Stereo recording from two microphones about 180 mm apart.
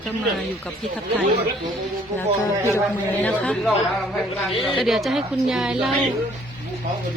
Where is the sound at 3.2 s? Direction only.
5° left (ahead or behind).